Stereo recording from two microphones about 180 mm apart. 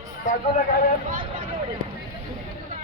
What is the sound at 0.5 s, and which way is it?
Speech, 50° left (ahead or behind).